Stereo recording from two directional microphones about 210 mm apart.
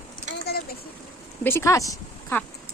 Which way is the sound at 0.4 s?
45° left (ahead or behind).